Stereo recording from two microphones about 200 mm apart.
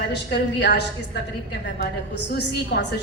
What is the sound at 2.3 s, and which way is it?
Speech, 55° left (ahead or behind).